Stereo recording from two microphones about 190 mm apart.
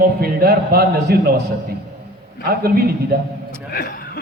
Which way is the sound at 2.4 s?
55° right (ahead or behind).